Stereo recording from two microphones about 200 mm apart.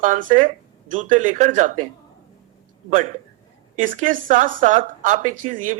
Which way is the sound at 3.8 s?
40° right (ahead or behind).